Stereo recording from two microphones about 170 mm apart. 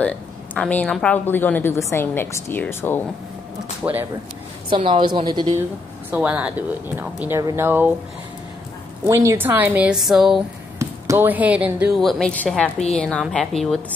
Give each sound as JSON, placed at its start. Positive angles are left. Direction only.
{"t": 0.6, "sound": "a woman's voice", "side_deg": 5}
{"t": 3.8, "sound": "speech", "side_deg": -10}
{"t": 4.6, "sound": "a woman's voice", "side_deg": -30}
{"t": 6.0, "sound": "speech", "side_deg": -10}
{"t": 9.0, "sound": "speech", "side_deg": -20}
{"t": 10.8, "sound": "a woman's voice", "side_deg": -15}